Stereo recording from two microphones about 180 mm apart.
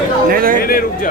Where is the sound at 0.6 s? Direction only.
55° left (ahead or behind).